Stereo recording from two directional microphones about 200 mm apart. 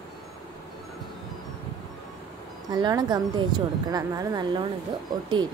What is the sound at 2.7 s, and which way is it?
Speech, 20° right (ahead or behind).